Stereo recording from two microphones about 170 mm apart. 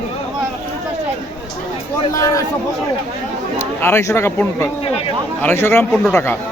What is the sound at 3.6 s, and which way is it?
Speech, 15° left (ahead or behind).